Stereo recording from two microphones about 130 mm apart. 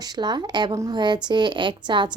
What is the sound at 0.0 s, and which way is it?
A woman's voice, 30° right (ahead or behind).